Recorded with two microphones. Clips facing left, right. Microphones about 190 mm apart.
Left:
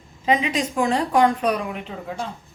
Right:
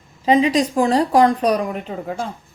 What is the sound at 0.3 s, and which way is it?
A woman's voice, 35° right (ahead or behind).